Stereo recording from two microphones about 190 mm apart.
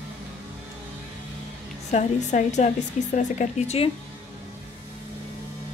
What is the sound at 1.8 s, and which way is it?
A woman's voice, 35° left (ahead or behind).